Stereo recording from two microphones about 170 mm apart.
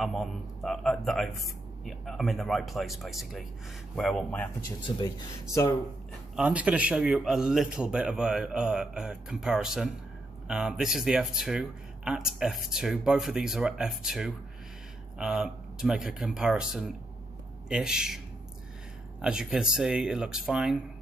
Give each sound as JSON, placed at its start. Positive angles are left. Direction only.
{"t": 0.0, "sound": "a man's voice", "side_deg": 0}
{"t": 4.8, "sound": "speech", "side_deg": 25}
{"t": 6.3, "sound": "speech", "side_deg": -5}
{"t": 19.2, "sound": "speech", "side_deg": -5}